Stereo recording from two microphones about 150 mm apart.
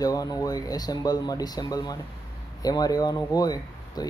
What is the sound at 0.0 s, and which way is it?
Speech, 25° left (ahead or behind).